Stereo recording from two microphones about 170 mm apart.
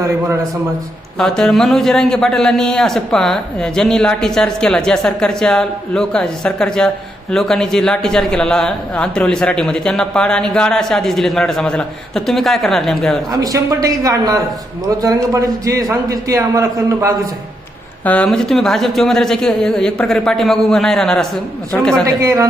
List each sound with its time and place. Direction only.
1.2 s a man's voice: 5° left (ahead or behind)
13.4 s a man's voice: 20° right (ahead or behind)
18.0 s a man's voice: 10° left (ahead or behind)
22.0 s a man's voice: 20° right (ahead or behind)